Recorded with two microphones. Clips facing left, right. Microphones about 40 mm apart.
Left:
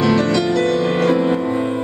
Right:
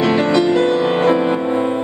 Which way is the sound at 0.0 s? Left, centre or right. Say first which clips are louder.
Right 2 dB; right.